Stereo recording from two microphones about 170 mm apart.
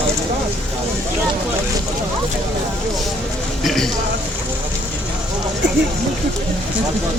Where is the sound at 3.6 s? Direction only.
Centre (ahead or behind).